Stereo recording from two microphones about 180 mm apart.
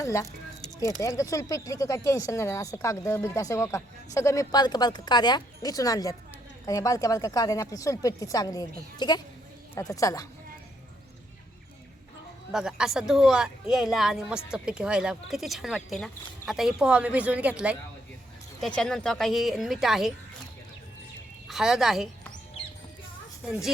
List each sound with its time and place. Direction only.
0.0 s a sound: 15° left (ahead or behind)
1.0 s speech: 15° left (ahead or behind)
12.5 s a woman's voice: 5° right (ahead or behind)
21.4 s speech: centre (ahead or behind)
23.5 s a woman's voice: centre (ahead or behind)